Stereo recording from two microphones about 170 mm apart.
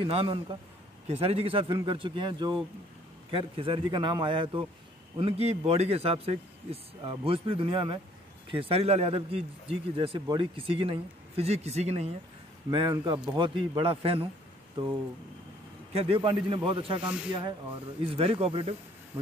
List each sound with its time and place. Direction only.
0.0 s a man's voice: 30° right (ahead or behind)
12.7 s a man's voice: 25° right (ahead or behind)